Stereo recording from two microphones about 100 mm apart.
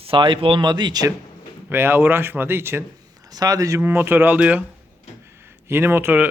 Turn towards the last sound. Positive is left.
turn(degrees=-20)  # may be behind; listen again after turning